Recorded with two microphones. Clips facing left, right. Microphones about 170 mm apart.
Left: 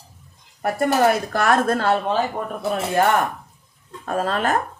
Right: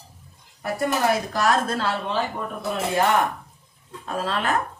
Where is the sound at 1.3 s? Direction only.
55° left (ahead or behind).